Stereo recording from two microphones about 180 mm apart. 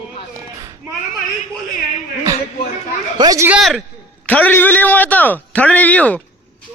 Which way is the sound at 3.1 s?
20° right (ahead or behind).